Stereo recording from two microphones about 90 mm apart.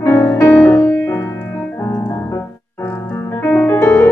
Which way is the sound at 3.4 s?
20° left (ahead or behind).